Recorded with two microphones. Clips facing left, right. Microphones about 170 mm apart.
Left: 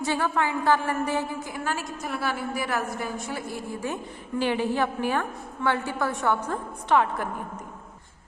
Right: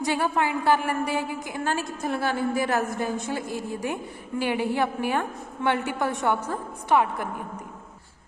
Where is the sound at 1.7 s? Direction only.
25° right (ahead or behind).